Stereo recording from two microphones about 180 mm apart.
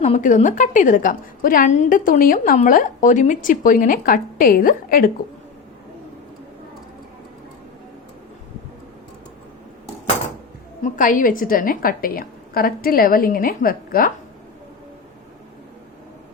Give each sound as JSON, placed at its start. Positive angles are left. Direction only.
{"t": 0.0, "sound": "a woman's voice", "side_deg": 40}
{"t": 10.8, "sound": "a woman's voice", "side_deg": 50}